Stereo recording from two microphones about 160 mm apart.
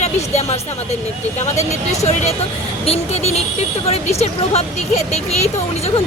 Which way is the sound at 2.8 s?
40° left (ahead or behind).